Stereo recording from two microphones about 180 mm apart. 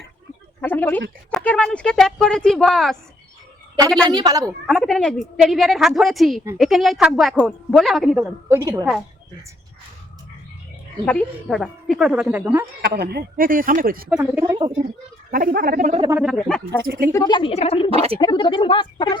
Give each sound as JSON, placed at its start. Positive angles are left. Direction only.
{"t": 0.6, "sound": "a woman's voice", "side_deg": 10}
{"t": 4.1, "sound": "a woman's voice", "side_deg": -20}
{"t": 4.6, "sound": "a woman's voice", "side_deg": 0}
{"t": 8.2, "sound": "a woman's voice", "side_deg": -15}
{"t": 11.0, "sound": "a woman's voice", "side_deg": 5}
{"t": 12.8, "sound": "speech", "side_deg": -60}
{"t": 14.2, "sound": "a woman's voice", "side_deg": -20}
{"t": 15.3, "sound": "speech", "side_deg": -50}
{"t": 16.2, "sound": "a woman's voice", "side_deg": 0}
{"t": 16.8, "sound": "speech", "side_deg": -55}
{"t": 17.1, "sound": "speech", "side_deg": 20}
{"t": 17.9, "sound": "speech", "side_deg": -35}
{"t": 18.2, "sound": "speech", "side_deg": 25}